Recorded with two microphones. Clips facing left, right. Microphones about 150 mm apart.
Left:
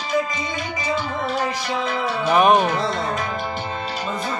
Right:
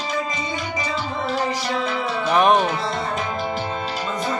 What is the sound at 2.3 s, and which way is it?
Music, 5° left (ahead or behind).